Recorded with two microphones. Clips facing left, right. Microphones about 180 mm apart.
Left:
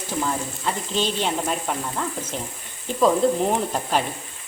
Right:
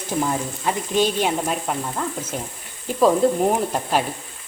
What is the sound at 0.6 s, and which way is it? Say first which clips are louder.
Stir: right 5 dB; 10° right (ahead or behind).